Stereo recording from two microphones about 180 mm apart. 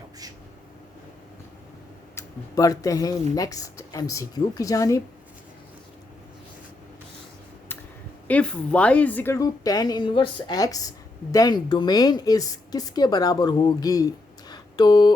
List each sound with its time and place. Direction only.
2.1 s a woman's voice: 20° left (ahead or behind)
8.3 s a woman's voice: 5° left (ahead or behind)
14.5 s a sound: 25° left (ahead or behind)